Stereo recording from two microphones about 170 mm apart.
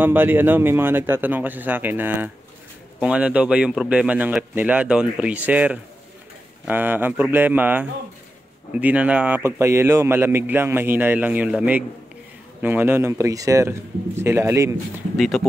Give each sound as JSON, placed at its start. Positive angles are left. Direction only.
{"t": 0.0, "sound": "speech", "side_deg": -10}
{"t": 15.1, "sound": "speech", "side_deg": 0}